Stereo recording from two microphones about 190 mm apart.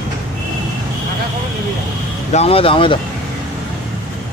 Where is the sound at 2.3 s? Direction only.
30° left (ahead or behind).